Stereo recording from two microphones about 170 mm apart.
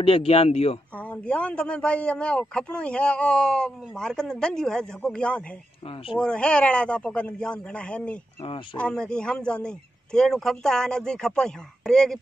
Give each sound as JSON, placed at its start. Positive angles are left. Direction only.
{"t": 0.0, "sound": "speech", "side_deg": 35}
{"t": 0.9, "sound": "a man's voice", "side_deg": 10}
{"t": 8.4, "sound": "speech", "side_deg": 30}
{"t": 8.7, "sound": "a man's voice", "side_deg": 5}